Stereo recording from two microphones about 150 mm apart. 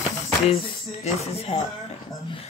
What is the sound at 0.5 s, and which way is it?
Speech, 45° left (ahead or behind).